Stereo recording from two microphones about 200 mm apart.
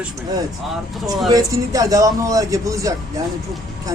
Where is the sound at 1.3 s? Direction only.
15° right (ahead or behind).